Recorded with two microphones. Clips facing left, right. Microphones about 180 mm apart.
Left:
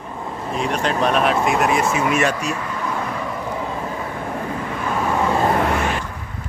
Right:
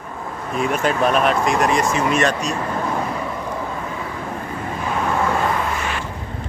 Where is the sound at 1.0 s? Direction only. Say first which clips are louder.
Even; centre (ahead or behind).